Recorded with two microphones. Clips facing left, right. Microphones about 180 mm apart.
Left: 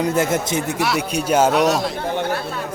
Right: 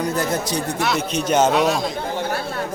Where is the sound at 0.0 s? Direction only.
25° left (ahead or behind).